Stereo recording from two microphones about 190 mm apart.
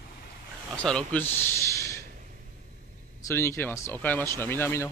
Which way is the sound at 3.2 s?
15° left (ahead or behind).